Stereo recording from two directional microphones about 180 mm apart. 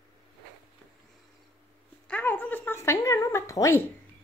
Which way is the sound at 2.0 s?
10° left (ahead or behind).